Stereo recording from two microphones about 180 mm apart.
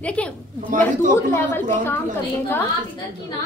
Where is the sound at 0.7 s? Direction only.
50° right (ahead or behind).